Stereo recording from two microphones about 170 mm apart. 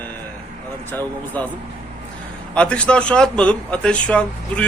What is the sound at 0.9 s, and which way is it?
Speech, 10° left (ahead or behind).